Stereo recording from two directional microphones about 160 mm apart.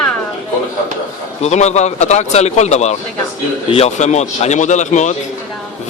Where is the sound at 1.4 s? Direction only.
45° left (ahead or behind).